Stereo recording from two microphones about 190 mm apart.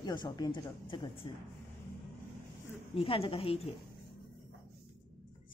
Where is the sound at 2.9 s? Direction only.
30° left (ahead or behind).